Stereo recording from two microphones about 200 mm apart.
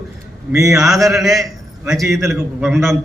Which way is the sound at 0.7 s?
Centre (ahead or behind).